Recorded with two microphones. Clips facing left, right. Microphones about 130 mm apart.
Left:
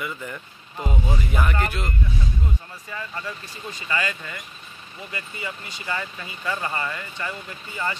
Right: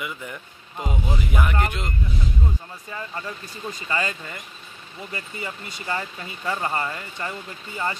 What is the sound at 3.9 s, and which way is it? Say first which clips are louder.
Speech: even; 30° right (ahead or behind).